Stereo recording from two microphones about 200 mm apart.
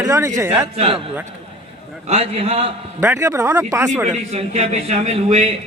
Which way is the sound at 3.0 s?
10° right (ahead or behind).